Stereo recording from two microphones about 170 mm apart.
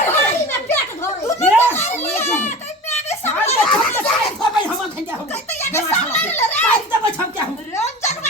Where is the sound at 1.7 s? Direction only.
45° left (ahead or behind).